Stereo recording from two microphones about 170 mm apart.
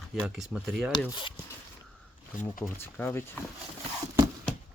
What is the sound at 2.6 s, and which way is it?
Speech, 15° left (ahead or behind).